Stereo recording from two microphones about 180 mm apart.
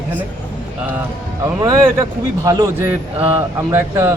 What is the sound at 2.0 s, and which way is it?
A man's voice, 20° right (ahead or behind).